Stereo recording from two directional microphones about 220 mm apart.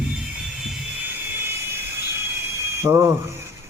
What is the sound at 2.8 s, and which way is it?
Speech, 15° right (ahead or behind).